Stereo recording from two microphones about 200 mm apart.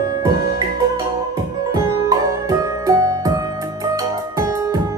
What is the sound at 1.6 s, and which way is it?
Music, 20° right (ahead or behind).